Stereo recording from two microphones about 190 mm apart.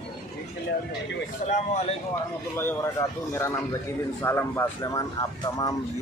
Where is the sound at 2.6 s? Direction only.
10° left (ahead or behind).